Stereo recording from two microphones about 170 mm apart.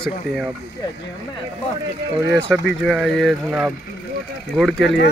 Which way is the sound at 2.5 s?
5° left (ahead or behind).